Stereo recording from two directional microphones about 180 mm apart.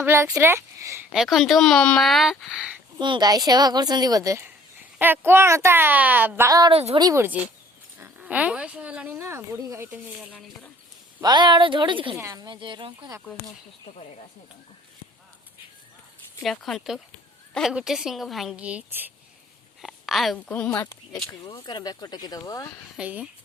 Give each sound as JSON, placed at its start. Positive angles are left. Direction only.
{"t": 0.0, "sound": "speech", "side_deg": -15}
{"t": 1.1, "sound": "speech", "side_deg": 0}
{"t": 3.0, "sound": "a woman's voice", "side_deg": -25}
{"t": 6.7, "sound": "speech", "side_deg": -35}
{"t": 7.0, "sound": "speech", "side_deg": -15}
{"t": 11.2, "sound": "a woman's voice", "side_deg": -25}
{"t": 16.4, "sound": "speech", "side_deg": 0}
{"t": 23.0, "sound": "speech", "side_deg": -5}